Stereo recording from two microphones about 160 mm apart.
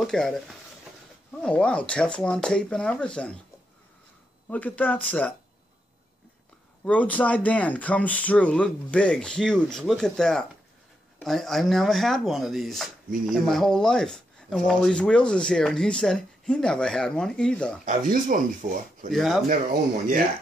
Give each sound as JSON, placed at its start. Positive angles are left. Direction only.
{"t": 0.0, "sound": "speech", "side_deg": 5}
{"t": 4.5, "sound": "speech", "side_deg": 10}
{"t": 6.8, "sound": "speech", "side_deg": 10}
{"t": 17.8, "sound": "speech", "side_deg": -60}
{"t": 19.1, "sound": "speech", "side_deg": 0}